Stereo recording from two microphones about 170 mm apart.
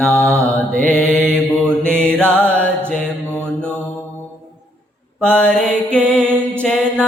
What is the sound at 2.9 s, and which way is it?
Mantra, 5° left (ahead or behind).